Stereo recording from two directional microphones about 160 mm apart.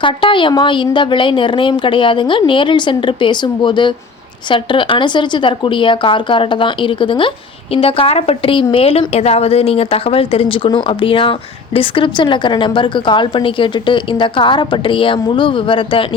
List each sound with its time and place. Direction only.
0.0 s speech: 30° left (ahead or behind)